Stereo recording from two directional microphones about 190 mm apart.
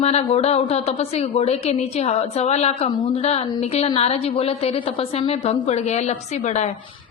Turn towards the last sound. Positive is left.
turn(degrees=35)  # may be behind; listen again after turning